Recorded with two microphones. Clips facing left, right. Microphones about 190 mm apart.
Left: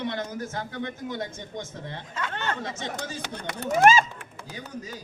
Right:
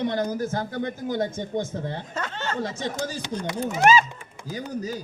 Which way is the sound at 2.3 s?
60° left (ahead or behind).